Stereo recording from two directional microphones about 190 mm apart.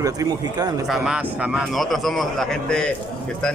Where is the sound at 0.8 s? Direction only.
Centre (ahead or behind).